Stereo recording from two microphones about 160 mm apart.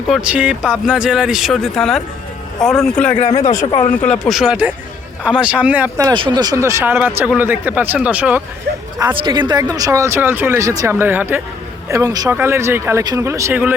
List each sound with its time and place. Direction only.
0.1 s speech: 5° right (ahead or behind)
3.5 s speech: 20° left (ahead or behind)
4.1 s speech: centre (ahead or behind)
6.1 s speech: 30° right (ahead or behind); by 8.4 s 10° right (ahead or behind)
9.0 s speech: 25° right (ahead or behind)